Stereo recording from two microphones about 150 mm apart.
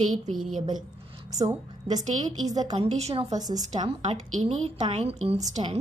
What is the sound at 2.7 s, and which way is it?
Speech, 45° right (ahead or behind).